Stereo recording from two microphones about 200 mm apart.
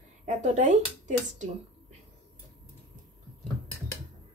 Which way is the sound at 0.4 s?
40° right (ahead or behind).